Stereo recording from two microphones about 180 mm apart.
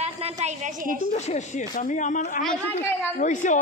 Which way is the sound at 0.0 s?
35° right (ahead or behind).